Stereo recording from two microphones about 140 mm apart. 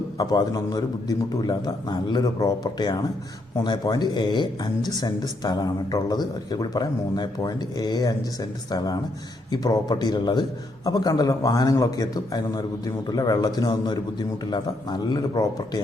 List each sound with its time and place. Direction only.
0.2 s speech: 25° left (ahead or behind)